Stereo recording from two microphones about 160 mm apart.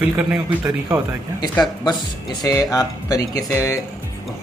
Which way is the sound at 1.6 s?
25° left (ahead or behind).